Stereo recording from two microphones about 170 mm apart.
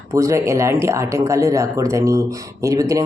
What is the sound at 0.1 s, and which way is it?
Speech, 20° right (ahead or behind).